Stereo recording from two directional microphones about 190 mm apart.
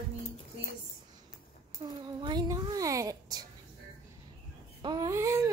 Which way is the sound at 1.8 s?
25° right (ahead or behind).